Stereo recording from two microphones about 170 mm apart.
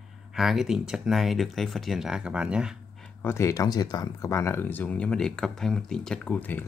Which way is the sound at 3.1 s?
15° left (ahead or behind).